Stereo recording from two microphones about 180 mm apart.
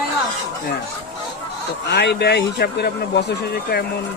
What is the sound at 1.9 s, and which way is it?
Speech, 70° left (ahead or behind).